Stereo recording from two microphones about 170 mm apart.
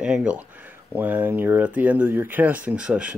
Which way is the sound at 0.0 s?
5° right (ahead or behind).